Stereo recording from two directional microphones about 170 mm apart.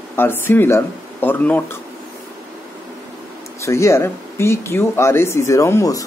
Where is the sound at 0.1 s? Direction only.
15° left (ahead or behind).